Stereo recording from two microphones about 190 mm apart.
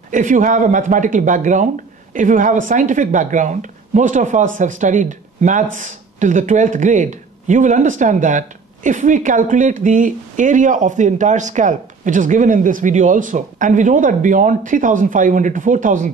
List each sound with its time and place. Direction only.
0.1 s speech: 40° right (ahead or behind)